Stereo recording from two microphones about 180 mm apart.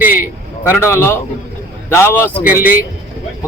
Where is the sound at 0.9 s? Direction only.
15° left (ahead or behind).